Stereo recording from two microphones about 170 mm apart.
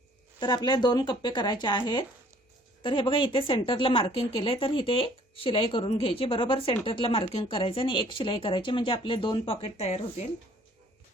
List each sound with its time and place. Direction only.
0.3 s speech: 25° left (ahead or behind)